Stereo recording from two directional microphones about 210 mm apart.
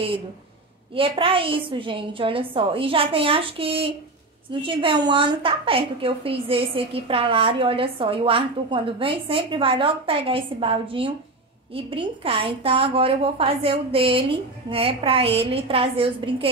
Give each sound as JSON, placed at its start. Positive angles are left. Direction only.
{"t": 0.9, "sound": "a woman's voice", "side_deg": -25}